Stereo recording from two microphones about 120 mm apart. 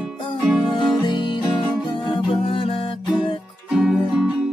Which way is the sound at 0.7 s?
40° left (ahead or behind).